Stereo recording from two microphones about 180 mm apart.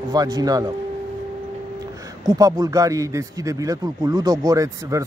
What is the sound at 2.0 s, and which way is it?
Speech, 20° right (ahead or behind).